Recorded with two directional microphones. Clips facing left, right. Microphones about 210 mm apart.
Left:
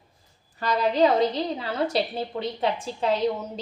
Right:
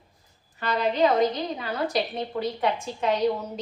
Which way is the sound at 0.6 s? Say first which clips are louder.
Left 2 dB; 30° left (ahead or behind).